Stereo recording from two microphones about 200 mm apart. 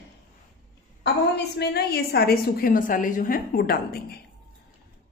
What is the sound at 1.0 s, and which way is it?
A woman's voice, 55° left (ahead or behind).